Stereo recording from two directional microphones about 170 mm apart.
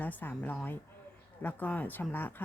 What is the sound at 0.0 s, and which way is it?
Speech, 10° left (ahead or behind).